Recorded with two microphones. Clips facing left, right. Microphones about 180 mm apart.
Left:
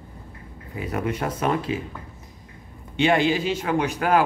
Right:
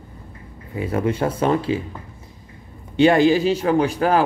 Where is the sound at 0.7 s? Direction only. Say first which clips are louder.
Right 5 dB; 25° right (ahead or behind).